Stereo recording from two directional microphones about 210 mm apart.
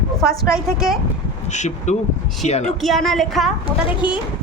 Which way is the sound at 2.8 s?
Centre (ahead or behind).